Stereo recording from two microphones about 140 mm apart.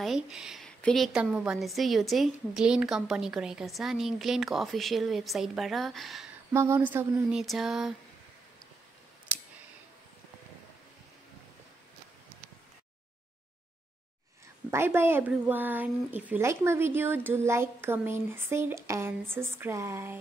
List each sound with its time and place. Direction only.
0.0 s a woman's voice: 5° right (ahead or behind)
6.5 s speech: 20° right (ahead or behind)
7.3 s a woman's voice: centre (ahead or behind)
14.7 s speech: 15° right (ahead or behind)